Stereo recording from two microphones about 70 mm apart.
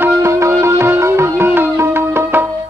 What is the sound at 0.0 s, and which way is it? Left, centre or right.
Music, right.